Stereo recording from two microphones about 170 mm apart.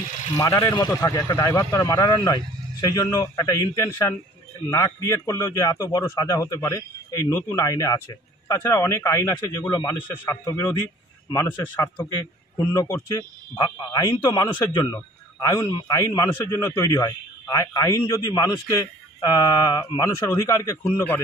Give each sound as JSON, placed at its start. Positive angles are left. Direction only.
{"t": 0.4, "sound": "a man's voice", "side_deg": 15}